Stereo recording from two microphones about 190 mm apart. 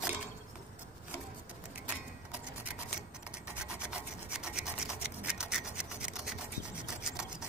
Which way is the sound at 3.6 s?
5° right (ahead or behind).